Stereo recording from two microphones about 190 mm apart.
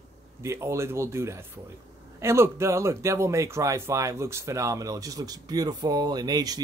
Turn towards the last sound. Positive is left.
turn(degrees=-20)  # may be behind; listen again after turning